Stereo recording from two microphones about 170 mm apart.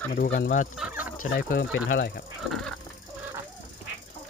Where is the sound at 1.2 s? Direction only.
60° left (ahead or behind).